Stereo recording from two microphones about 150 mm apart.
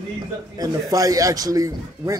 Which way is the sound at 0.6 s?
25° right (ahead or behind).